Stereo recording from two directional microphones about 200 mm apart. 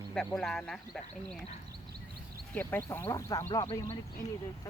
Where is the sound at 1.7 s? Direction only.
50° right (ahead or behind).